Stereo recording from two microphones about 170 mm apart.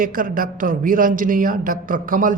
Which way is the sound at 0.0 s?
55° right (ahead or behind).